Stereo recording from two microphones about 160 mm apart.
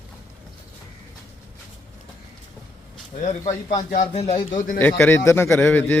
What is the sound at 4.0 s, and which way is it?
Speech, 40° left (ahead or behind).